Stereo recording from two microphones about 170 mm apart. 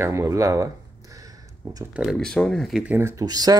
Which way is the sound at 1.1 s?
20° right (ahead or behind).